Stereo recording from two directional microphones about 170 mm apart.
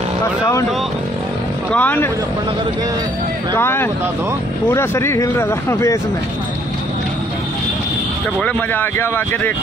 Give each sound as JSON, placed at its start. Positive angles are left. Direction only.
{"t": 1.7, "sound": "speech", "side_deg": 10}
{"t": 3.5, "sound": "speech", "side_deg": 15}
{"t": 8.4, "sound": "speech", "side_deg": 10}